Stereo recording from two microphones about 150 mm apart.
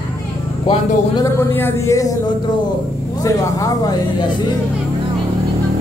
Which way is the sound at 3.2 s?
20° left (ahead or behind).